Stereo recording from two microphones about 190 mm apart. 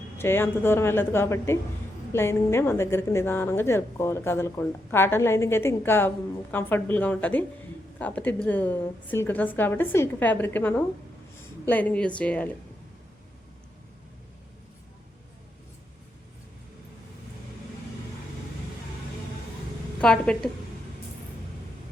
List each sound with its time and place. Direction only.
0.2 s a woman's voice: 10° left (ahead or behind)
20.0 s a woman's voice: 5° left (ahead or behind)